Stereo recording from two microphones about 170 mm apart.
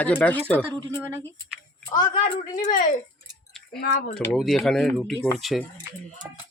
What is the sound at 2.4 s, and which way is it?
Speech, 50° left (ahead or behind).